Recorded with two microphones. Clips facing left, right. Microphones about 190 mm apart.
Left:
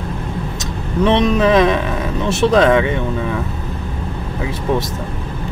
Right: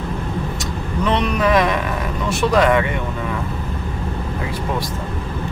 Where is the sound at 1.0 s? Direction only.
25° left (ahead or behind).